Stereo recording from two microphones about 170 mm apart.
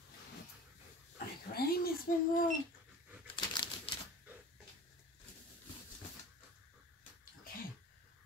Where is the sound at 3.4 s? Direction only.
25° left (ahead or behind).